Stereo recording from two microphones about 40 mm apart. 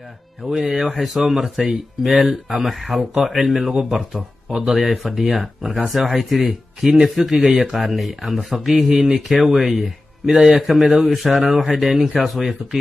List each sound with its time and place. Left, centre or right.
0.4 s speech: centre
4.5 s speech: centre
4.7 s speech: centre